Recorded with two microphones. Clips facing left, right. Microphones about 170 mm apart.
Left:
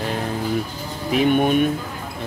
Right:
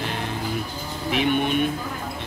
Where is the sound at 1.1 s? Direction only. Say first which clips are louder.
Left 5 dB; 40° left (ahead or behind).